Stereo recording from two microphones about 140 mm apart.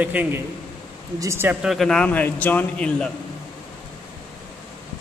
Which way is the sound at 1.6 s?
5° left (ahead or behind).